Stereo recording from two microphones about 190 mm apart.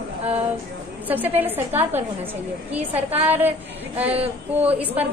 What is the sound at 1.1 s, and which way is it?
Speech, 10° right (ahead or behind).